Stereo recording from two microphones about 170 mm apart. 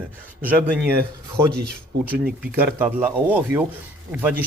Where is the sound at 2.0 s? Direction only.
5° right (ahead or behind).